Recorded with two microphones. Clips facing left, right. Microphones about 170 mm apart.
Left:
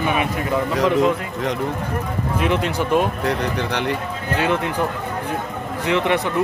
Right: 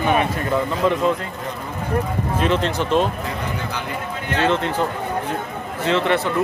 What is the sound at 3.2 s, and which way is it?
Speech, 70° left (ahead or behind).